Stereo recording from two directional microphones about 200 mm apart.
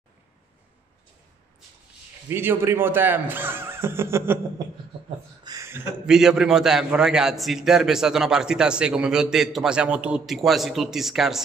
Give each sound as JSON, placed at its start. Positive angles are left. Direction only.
{"t": 2.2, "sound": "speech", "side_deg": -10}
{"t": 5.4, "sound": "a sound", "side_deg": -15}
{"t": 6.0, "sound": "a man's voice", "side_deg": -5}